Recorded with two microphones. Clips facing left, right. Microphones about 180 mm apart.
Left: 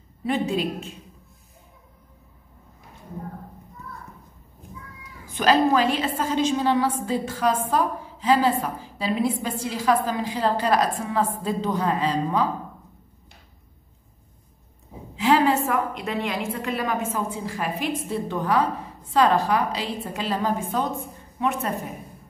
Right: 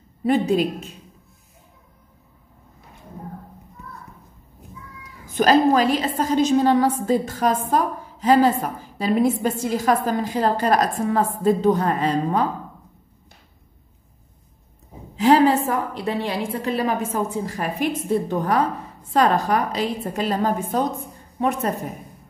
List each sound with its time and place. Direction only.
0.2 s a woman's voice: 40° right (ahead or behind)
5.4 s a woman's voice: 40° right (ahead or behind)
15.1 s a woman's voice: 40° right (ahead or behind)